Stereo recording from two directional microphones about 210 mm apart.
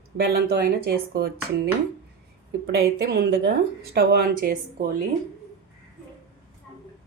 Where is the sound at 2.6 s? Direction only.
50° right (ahead or behind).